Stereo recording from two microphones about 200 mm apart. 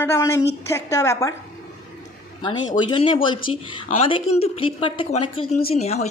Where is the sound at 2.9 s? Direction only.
25° left (ahead or behind).